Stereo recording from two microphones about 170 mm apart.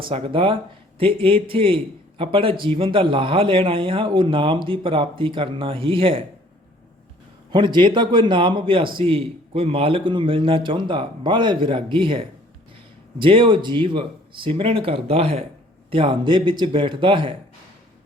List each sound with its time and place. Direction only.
0.1 s a man's voice: 30° right (ahead or behind)
7.5 s a man's voice: 25° right (ahead or behind)